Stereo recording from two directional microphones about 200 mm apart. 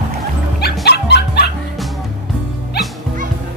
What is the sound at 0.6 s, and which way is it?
Dog, 55° left (ahead or behind).